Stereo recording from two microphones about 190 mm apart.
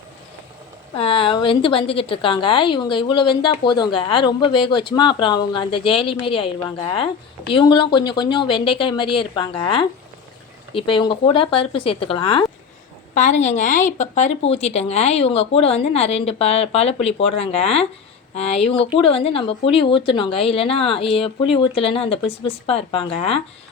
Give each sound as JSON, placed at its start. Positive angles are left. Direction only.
{"t": 0.9, "sound": "a woman's voice", "side_deg": 30}
{"t": 13.1, "sound": "a woman's voice", "side_deg": 40}